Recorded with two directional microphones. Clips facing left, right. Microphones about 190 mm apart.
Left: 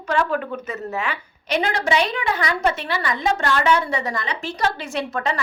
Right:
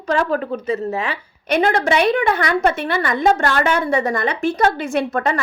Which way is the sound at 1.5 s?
55° right (ahead or behind).